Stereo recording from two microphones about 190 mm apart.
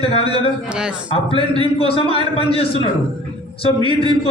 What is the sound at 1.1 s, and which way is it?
A man's voice, 25° left (ahead or behind).